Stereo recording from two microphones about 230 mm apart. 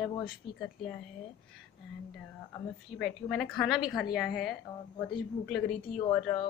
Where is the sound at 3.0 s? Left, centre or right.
Centre.